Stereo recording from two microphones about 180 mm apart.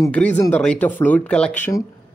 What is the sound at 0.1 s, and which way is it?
Speech, 5° left (ahead or behind).